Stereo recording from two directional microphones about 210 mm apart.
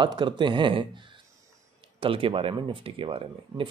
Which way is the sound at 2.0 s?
25° right (ahead or behind).